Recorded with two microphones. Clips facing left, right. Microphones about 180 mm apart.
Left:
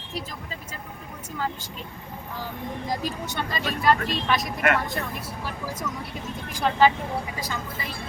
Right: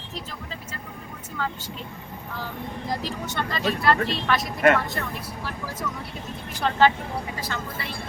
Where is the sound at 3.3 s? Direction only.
10° left (ahead or behind).